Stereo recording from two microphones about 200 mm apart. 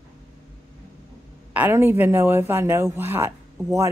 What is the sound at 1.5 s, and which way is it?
Speech, 10° right (ahead or behind).